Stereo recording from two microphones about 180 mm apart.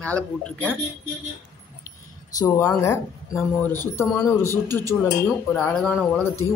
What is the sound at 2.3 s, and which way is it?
A man's voice, 15° left (ahead or behind).